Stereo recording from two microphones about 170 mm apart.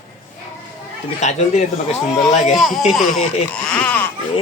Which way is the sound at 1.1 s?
40° left (ahead or behind).